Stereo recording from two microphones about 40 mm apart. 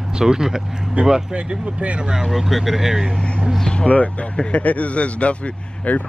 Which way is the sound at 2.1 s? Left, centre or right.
Centre.